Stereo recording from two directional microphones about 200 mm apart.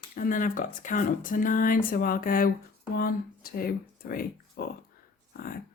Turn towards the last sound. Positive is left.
turn(degrees=50)  # may be behind; listen again after turning